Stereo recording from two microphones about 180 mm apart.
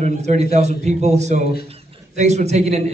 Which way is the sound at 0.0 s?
40° right (ahead or behind).